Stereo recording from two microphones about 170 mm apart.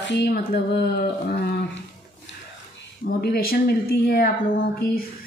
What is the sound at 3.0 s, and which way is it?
A woman's voice, 65° left (ahead or behind).